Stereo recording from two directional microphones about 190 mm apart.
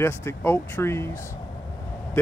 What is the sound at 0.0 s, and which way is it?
Speech, 15° left (ahead or behind).